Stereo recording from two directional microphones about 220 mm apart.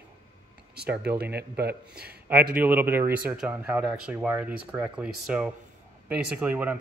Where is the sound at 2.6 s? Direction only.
10° right (ahead or behind).